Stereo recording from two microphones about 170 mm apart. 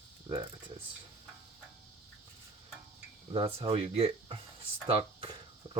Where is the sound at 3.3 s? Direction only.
35° right (ahead or behind).